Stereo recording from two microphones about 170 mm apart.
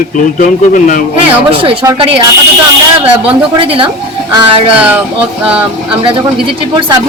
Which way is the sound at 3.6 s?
30° right (ahead or behind).